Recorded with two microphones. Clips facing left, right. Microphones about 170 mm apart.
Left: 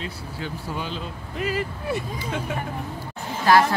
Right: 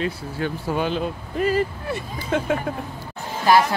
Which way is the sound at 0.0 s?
60° right (ahead or behind).